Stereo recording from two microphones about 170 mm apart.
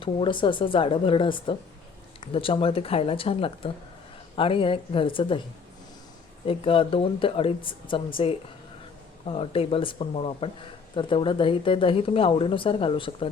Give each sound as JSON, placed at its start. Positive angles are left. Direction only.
{"t": 0.0, "sound": "speech", "side_deg": 30}
{"t": 6.4, "sound": "speech", "side_deg": 30}